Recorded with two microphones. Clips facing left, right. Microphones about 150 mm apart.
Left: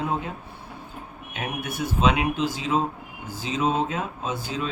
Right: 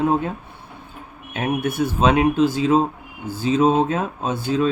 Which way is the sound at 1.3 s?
55° right (ahead or behind).